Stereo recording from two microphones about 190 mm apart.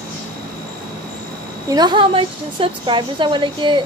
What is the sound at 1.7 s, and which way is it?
A woman's voice, 25° right (ahead or behind).